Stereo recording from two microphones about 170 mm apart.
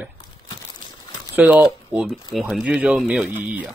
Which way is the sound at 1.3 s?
10° right (ahead or behind).